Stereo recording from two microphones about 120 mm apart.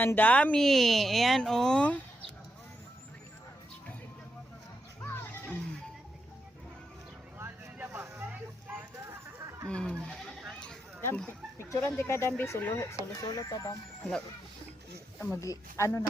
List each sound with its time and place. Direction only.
0.0 s speech: 15° left (ahead or behind)
5.0 s music: 20° left (ahead or behind)
7.3 s vehicle: 20° right (ahead or behind)
9.0 s chatter: 25° right (ahead or behind)
9.6 s goat: 5° left (ahead or behind)
11.0 s speech: 15° left (ahead or behind)
15.4 s speech: 25° left (ahead or behind)